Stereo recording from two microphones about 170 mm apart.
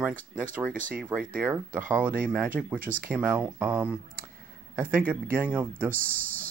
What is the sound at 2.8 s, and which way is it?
Speech, 55° right (ahead or behind).